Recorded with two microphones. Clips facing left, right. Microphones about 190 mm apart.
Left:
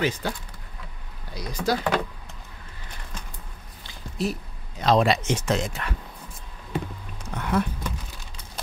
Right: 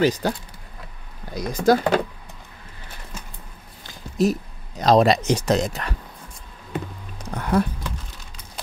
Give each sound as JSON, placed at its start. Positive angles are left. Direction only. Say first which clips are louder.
{"t": 0.0, "sound": "speech", "louder": "right 6 dB", "side_deg": -40}
{"t": 1.3, "sound": "speech", "louder": "right 8 dB", "side_deg": -45}
{"t": 3.8, "sound": "speech", "louder": "right 7 dB", "side_deg": -45}
{"t": 7.2, "sound": "a sound", "louder": "right 4 dB", "side_deg": -40}